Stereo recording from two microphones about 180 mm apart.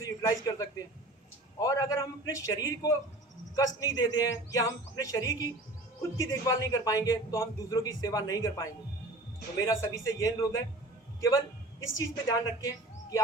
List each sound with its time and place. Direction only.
0.0 s a man's voice: 20° left (ahead or behind)
12.5 s speech: 20° left (ahead or behind)